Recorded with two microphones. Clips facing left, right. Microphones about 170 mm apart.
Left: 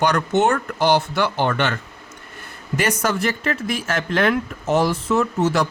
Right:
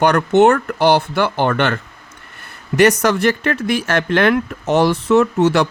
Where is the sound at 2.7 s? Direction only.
75° right (ahead or behind).